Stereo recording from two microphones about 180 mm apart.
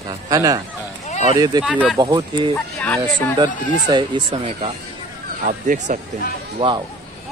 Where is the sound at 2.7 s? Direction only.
5° left (ahead or behind).